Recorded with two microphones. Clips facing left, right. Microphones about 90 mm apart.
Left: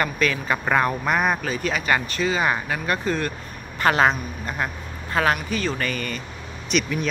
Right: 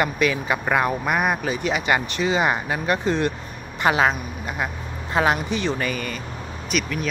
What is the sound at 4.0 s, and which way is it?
Speech, 5° right (ahead or behind).